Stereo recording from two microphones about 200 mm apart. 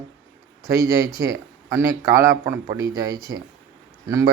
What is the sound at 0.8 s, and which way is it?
A man's voice, 15° right (ahead or behind).